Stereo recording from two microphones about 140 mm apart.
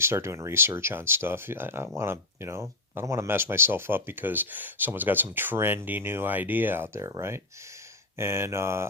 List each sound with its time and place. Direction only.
0.0 s speech: 20° right (ahead or behind)
8.2 s mantra: 20° right (ahead or behind)